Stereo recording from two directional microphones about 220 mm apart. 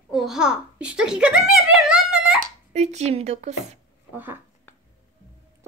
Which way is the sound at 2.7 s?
30° right (ahead or behind).